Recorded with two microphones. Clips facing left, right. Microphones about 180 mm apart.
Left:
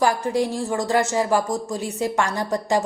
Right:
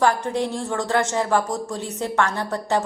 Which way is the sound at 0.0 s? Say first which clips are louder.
Even; 10° left (ahead or behind).